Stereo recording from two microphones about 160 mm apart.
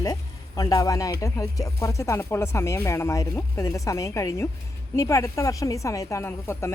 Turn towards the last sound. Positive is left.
turn(degrees=15)  # may be behind; listen again after turning